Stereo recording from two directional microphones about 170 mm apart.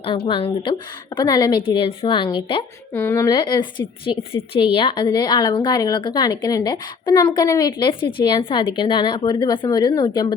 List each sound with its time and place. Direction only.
0.3 s a woman's voice: 30° left (ahead or behind)
2.9 s a woman's voice: 15° left (ahead or behind)
3.2 s a woman's voice: 25° left (ahead or behind)